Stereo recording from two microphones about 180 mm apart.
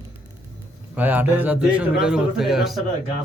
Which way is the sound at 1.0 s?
10° right (ahead or behind).